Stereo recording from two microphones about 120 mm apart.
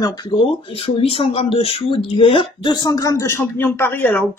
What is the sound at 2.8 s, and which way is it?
Speech, 30° left (ahead or behind).